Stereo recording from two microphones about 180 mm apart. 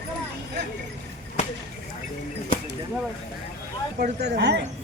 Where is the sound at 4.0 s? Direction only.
65° right (ahead or behind).